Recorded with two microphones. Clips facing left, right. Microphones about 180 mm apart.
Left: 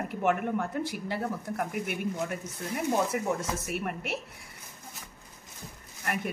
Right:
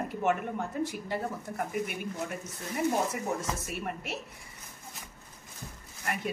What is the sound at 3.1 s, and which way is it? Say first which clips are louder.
Speech: left 3 dB; 65° left (ahead or behind).